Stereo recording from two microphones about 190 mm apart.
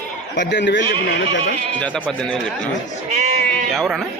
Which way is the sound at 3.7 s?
Centre (ahead or behind).